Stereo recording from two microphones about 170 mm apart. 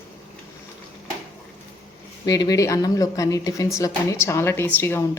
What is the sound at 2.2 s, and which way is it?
A woman's voice, 20° left (ahead or behind).